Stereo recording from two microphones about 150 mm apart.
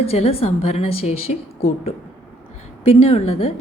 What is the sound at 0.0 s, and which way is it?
A woman's voice, 45° left (ahead or behind).